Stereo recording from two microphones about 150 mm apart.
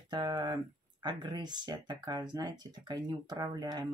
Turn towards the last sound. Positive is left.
turn(degrees=-25)  # may be behind; listen again after turning